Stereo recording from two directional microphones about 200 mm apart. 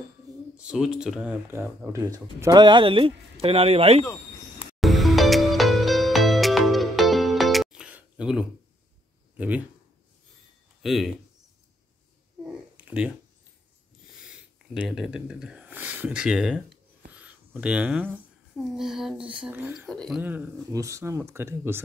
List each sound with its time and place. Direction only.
0.6 s speech: 5° right (ahead or behind); by 4.0 s 30° right (ahead or behind)
4.7 s music: centre (ahead or behind)
9.4 s speech: 5° right (ahead or behind)
10.8 s speech: centre (ahead or behind)
12.4 s a sound: 5° right (ahead or behind)
14.2 s speech: 5° right (ahead or behind)
19.9 s speech: 5° left (ahead or behind)
20.2 s speech: 10° right (ahead or behind)